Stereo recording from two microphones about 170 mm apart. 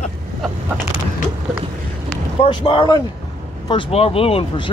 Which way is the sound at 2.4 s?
30° left (ahead or behind).